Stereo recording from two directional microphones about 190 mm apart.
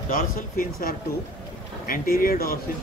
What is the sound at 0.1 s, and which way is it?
Speech, 50° left (ahead or behind).